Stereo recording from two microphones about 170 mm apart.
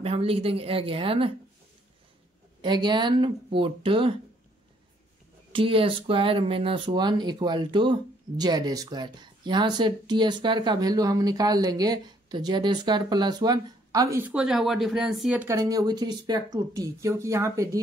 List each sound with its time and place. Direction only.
0.0 s speech: 35° right (ahead or behind)
2.6 s speech: 25° right (ahead or behind)
5.5 s speech: 30° right (ahead or behind); by 15.5 s 5° right (ahead or behind)
15.5 s speech: 20° right (ahead or behind)